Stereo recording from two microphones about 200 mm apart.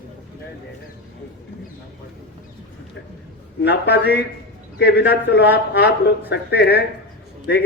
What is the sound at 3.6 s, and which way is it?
A man's voice, 55° left (ahead or behind).